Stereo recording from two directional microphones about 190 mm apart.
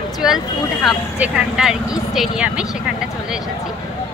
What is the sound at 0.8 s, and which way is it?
Speech, 5° right (ahead or behind).